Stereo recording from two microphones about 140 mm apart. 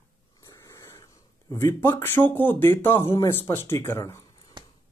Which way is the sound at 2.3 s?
15° left (ahead or behind).